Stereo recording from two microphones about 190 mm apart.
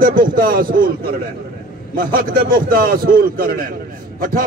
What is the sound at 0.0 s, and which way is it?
A man's voice, 45° right (ahead or behind).